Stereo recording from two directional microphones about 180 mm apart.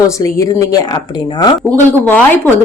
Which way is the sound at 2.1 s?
10° left (ahead or behind).